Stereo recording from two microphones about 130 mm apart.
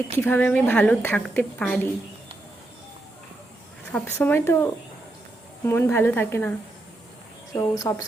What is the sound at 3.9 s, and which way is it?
Speech, 15° left (ahead or behind).